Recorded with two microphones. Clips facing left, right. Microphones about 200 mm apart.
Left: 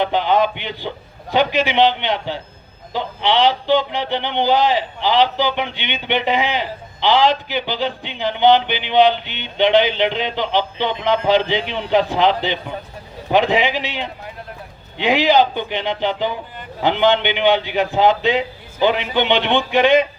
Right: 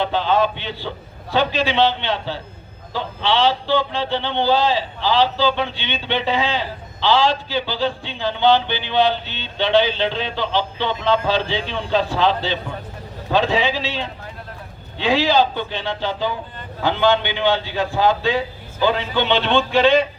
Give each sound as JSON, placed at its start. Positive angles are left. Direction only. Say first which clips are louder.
{"t": 0.0, "sound": "a man's voice", "louder": "left 2 dB", "side_deg": 15}